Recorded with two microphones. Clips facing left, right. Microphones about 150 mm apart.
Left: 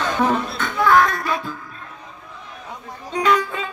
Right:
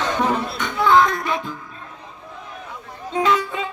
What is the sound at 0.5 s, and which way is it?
A child's voice, 20° right (ahead or behind).